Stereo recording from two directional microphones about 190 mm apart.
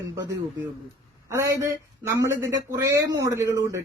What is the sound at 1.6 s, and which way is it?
A woman's voice, 15° right (ahead or behind).